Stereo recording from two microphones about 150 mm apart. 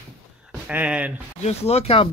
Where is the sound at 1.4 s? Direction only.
45° left (ahead or behind).